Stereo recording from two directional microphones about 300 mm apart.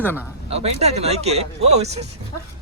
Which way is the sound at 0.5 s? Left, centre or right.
Right.